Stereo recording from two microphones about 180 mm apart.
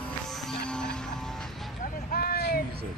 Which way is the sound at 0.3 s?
Centre (ahead or behind).